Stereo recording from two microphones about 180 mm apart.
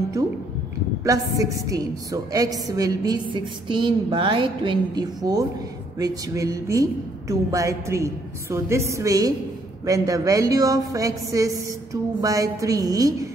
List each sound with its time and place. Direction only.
1.0 s a woman's voice: 20° right (ahead or behind)